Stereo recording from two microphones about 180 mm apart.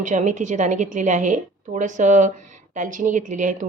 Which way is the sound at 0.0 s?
45° right (ahead or behind).